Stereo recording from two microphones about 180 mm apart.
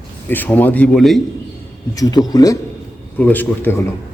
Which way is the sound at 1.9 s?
20° left (ahead or behind).